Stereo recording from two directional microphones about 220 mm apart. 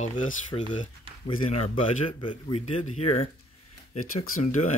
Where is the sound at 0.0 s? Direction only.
35° left (ahead or behind).